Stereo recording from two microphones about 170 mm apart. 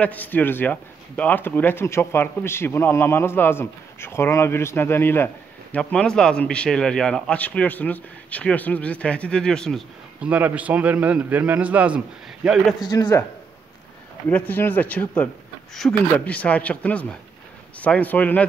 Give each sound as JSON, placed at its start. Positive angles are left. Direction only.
{"t": 0.0, "sound": "speech", "side_deg": 10}
{"t": 10.3, "sound": "a man's voice", "side_deg": -10}
{"t": 12.8, "sound": "speech", "side_deg": 20}
{"t": 14.3, "sound": "speech", "side_deg": 10}